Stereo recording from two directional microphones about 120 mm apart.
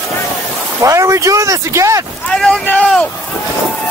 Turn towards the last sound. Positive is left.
turn(degrees=10)  # may be behind; listen again after turning